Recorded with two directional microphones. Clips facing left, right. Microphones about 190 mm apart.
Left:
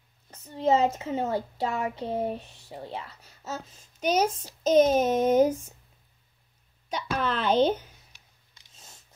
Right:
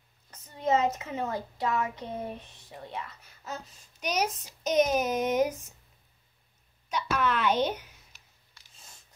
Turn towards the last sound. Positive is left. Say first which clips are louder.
# left 4 dB
turn(degrees=30)  # may be behind; listen again after turning